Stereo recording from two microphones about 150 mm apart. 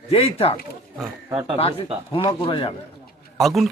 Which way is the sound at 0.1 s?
40° left (ahead or behind).